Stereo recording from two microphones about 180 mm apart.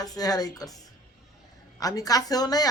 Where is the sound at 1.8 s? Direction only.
20° left (ahead or behind).